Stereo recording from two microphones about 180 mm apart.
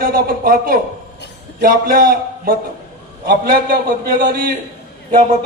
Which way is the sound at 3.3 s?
65° right (ahead or behind).